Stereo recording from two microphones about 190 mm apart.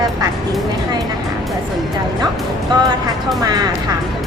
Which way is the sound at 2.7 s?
20° right (ahead or behind).